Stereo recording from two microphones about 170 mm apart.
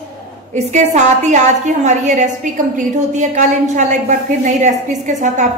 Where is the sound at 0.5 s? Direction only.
45° right (ahead or behind).